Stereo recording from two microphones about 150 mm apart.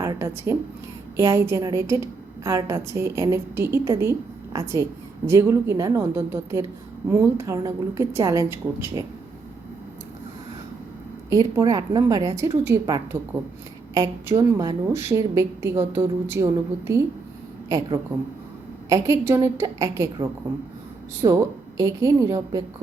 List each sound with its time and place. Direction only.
0.0 s a woman's voice: 20° right (ahead or behind)
11.3 s a woman's voice: 25° right (ahead or behind)